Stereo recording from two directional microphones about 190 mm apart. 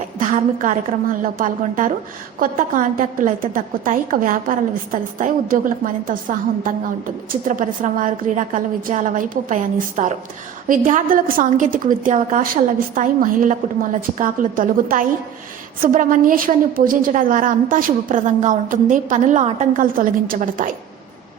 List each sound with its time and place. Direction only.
0.2 s a woman's voice: 45° right (ahead or behind)